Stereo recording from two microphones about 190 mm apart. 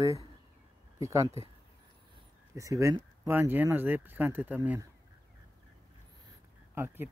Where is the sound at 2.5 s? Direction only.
15° right (ahead or behind).